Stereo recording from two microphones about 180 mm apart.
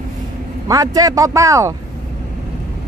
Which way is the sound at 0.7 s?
20° right (ahead or behind).